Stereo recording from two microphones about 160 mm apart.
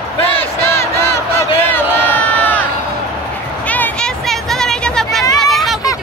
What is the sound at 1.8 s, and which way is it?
Crowd, 10° left (ahead or behind).